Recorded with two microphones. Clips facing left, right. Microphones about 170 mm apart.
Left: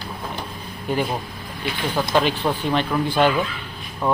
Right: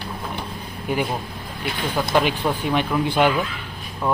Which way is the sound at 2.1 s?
10° right (ahead or behind).